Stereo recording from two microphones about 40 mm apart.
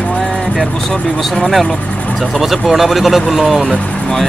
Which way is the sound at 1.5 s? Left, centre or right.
Centre.